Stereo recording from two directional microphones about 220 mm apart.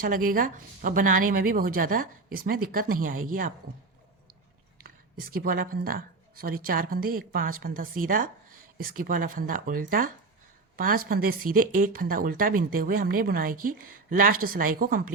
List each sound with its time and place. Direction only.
0.0 s a woman's voice: 40° right (ahead or behind)
4.8 s a woman's voice: 40° right (ahead or behind)